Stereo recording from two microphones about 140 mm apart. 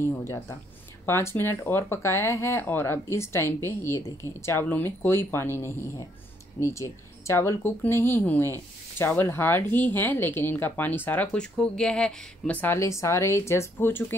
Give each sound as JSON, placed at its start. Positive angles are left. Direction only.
{"t": 0.0, "sound": "speech", "side_deg": 20}